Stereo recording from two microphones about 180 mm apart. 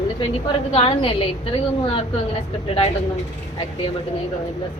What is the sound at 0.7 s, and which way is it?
Speech, 30° left (ahead or behind).